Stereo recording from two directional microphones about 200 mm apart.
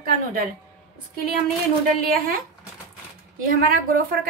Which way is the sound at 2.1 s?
45° right (ahead or behind).